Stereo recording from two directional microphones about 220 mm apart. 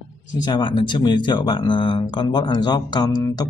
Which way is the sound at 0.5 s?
20° left (ahead or behind).